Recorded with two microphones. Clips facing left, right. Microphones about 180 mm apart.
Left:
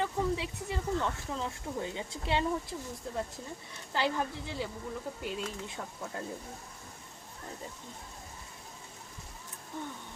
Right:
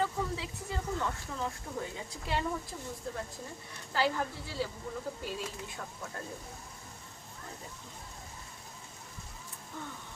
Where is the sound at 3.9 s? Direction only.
20° left (ahead or behind).